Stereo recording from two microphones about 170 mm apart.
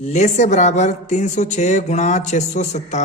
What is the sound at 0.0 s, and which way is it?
A man's voice, 40° left (ahead or behind).